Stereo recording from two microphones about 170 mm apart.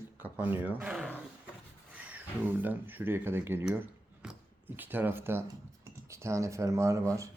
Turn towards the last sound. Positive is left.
turn(degrees=-20)  # may be behind; listen again after turning